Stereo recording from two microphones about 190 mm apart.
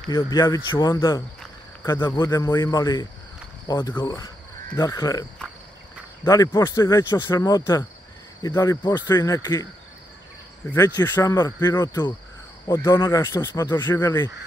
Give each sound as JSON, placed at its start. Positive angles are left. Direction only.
{"t": 0.1, "sound": "speech", "side_deg": 20}
{"t": 6.2, "sound": "speech", "side_deg": 20}
{"t": 10.7, "sound": "speech", "side_deg": 20}